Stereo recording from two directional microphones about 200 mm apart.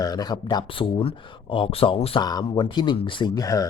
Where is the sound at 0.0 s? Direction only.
20° left (ahead or behind).